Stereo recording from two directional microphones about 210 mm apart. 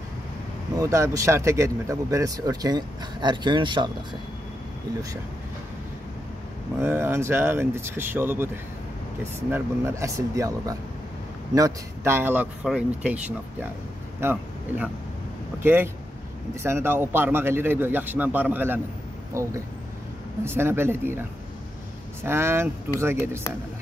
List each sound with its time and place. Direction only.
0.7 s speech: 15° right (ahead or behind)
6.8 s speech: 10° right (ahead or behind)
9.5 s a man's voice: 15° right (ahead or behind)
22.2 s speech: 10° right (ahead or behind)